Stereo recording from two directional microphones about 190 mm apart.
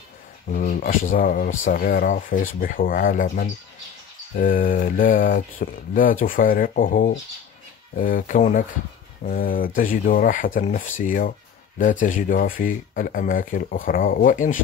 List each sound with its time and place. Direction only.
0.5 s speech: 45° left (ahead or behind)